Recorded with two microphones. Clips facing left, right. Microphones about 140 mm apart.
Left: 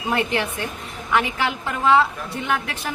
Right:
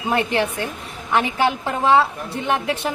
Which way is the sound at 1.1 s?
30° right (ahead or behind).